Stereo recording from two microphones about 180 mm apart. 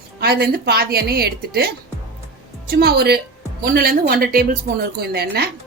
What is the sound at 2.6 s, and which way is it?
A woman's voice, 60° right (ahead or behind).